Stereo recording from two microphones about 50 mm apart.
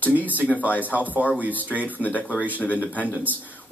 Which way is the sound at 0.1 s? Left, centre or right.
Right.